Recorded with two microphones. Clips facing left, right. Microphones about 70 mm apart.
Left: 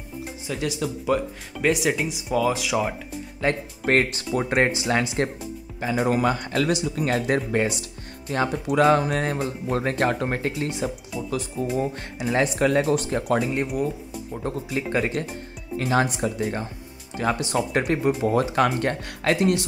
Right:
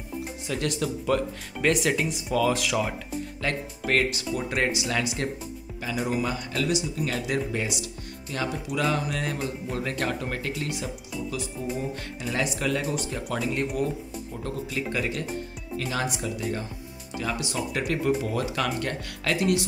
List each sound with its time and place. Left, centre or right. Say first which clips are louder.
0.5 s speech: left 1 dB; centre
3.4 s speech: left 6 dB; left
3.8 s speech: left 4 dB; left
5.9 s speech: left 6 dB; left
14.3 s speech: left 4 dB; left